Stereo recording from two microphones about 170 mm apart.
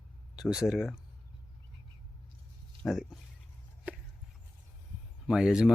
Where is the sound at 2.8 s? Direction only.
Centre (ahead or behind).